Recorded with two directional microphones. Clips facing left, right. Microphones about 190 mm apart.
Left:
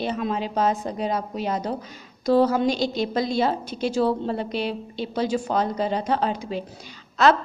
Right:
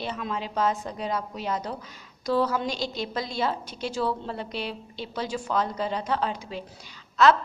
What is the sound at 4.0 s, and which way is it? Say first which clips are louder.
A woman's voice: left 6 dB; 35° left (ahead or behind).